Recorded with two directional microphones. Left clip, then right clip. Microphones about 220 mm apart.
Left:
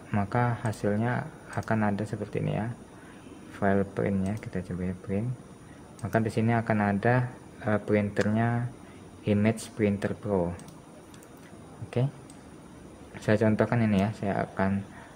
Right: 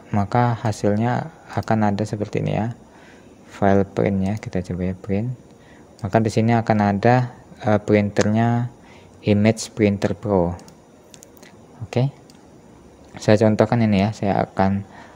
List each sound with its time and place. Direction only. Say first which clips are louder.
0.1 s speech: right 8 dB; 30° right (ahead or behind)
11.9 s speech: right 8 dB; 30° right (ahead or behind)
13.1 s speech: right 9 dB; 30° right (ahead or behind)